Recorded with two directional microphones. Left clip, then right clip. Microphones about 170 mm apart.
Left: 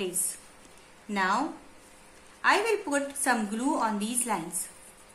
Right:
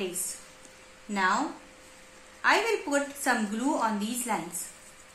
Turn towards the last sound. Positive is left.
turn(degrees=10)  # may be behind; listen again after turning